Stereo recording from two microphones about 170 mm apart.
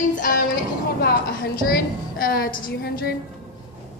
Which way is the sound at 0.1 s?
50° left (ahead or behind).